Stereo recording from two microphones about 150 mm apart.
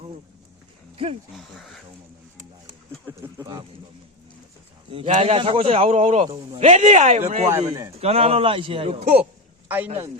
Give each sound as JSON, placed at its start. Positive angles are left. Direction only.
{"t": 1.4, "sound": "speech", "side_deg": 0}
{"t": 3.1, "sound": "speech", "side_deg": -20}
{"t": 4.9, "sound": "a man's voice", "side_deg": -35}
{"t": 9.6, "sound": "speech", "side_deg": -10}